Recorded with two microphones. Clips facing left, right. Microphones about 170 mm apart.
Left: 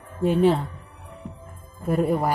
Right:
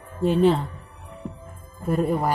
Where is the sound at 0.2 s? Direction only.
10° left (ahead or behind).